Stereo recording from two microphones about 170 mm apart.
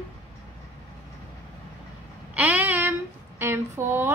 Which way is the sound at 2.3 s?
10° right (ahead or behind).